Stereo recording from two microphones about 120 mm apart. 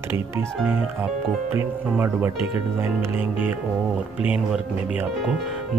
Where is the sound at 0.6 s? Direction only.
15° right (ahead or behind).